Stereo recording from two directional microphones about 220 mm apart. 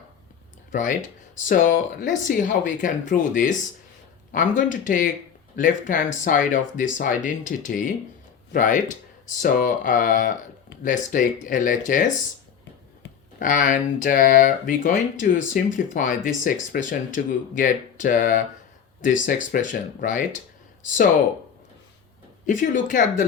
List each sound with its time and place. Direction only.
0.7 s speech: 35° left (ahead or behind)
13.4 s speech: 35° left (ahead or behind)
22.4 s speech: 35° left (ahead or behind)